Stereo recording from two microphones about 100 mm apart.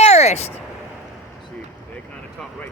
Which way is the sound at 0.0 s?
90° left.